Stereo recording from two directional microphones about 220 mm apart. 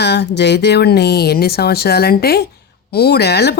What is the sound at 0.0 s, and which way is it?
Speech, 50° left (ahead or behind).